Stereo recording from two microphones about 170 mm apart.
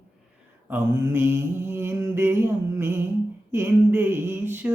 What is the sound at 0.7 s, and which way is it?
Mantra, 15° right (ahead or behind).